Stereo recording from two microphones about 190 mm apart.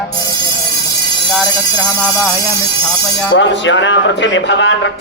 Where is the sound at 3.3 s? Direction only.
70° left (ahead or behind).